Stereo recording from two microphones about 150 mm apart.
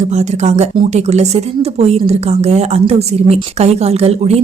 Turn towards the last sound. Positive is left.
turn(degrees=-45)  # may be behind; listen again after turning